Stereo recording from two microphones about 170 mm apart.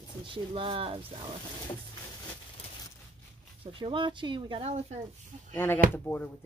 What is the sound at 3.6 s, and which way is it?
Speech, 30° right (ahead or behind).